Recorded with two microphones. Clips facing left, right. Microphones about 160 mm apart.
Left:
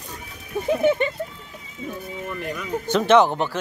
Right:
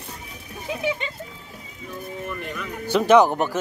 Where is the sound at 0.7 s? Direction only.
55° left (ahead or behind).